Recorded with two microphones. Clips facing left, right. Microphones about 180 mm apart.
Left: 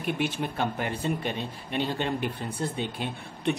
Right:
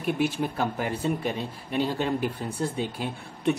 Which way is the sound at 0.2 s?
5° right (ahead or behind).